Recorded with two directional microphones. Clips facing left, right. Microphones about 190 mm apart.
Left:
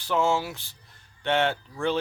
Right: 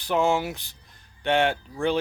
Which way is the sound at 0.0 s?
15° right (ahead or behind).